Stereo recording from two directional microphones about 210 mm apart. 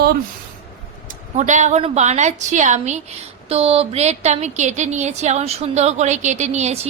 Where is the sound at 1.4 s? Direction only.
35° right (ahead or behind).